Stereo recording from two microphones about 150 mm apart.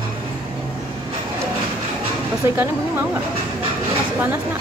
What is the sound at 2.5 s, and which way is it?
Speech, 15° right (ahead or behind).